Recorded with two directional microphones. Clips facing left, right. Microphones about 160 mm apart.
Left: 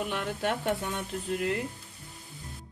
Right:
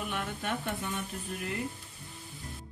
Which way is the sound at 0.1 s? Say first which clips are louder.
Left 4 dB; 80° left.